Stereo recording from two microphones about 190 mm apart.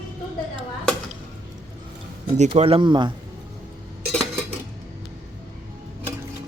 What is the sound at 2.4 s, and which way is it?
Speech, 30° right (ahead or behind).